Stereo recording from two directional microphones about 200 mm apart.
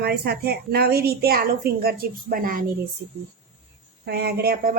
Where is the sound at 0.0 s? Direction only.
50° right (ahead or behind).